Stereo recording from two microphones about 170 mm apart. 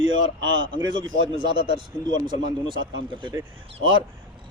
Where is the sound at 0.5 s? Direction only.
30° right (ahead or behind).